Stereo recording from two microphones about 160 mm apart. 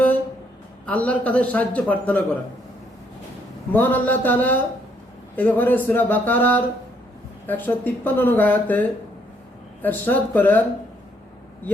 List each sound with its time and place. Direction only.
0.9 s speech: 10° left (ahead or behind)
3.7 s speech: 10° left (ahead or behind)
9.8 s speech: 10° left (ahead or behind)